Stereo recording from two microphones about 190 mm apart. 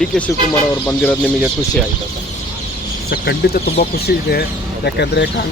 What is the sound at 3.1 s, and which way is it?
Speech, 55° left (ahead or behind).